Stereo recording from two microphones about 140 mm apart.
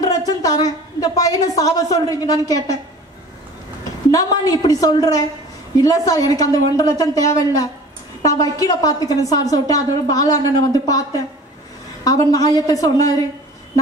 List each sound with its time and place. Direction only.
0.0 s a woman's voice: 25° left (ahead or behind)
4.1 s a woman's voice: 25° left (ahead or behind)